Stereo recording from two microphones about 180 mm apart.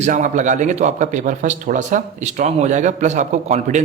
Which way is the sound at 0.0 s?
40° right (ahead or behind).